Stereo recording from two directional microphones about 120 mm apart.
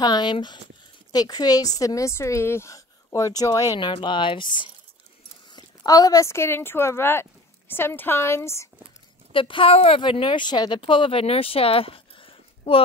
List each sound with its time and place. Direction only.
0.0 s a woman's voice: 35° left (ahead or behind)
3.8 s speech: 40° left (ahead or behind); by 8.6 s 20° left (ahead or behind)
9.3 s speech: 45° left (ahead or behind)
10.0 s speech: 45° left (ahead or behind)